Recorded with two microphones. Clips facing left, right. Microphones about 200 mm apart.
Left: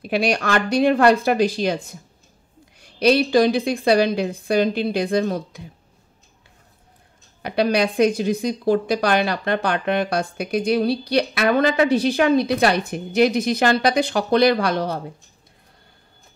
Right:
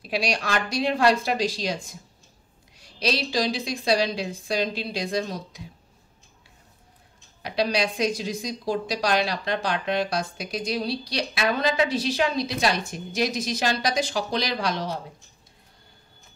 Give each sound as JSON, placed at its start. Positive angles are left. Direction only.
{"t": 0.0, "sound": "speech", "side_deg": 55}
{"t": 7.4, "sound": "speech", "side_deg": 60}